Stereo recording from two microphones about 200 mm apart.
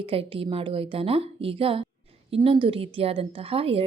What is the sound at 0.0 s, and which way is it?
A woman's voice, 25° right (ahead or behind).